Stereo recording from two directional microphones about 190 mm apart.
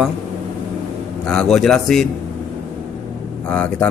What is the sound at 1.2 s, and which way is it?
Speech, centre (ahead or behind).